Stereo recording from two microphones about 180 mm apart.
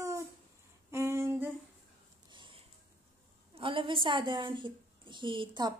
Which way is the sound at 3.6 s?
30° right (ahead or behind).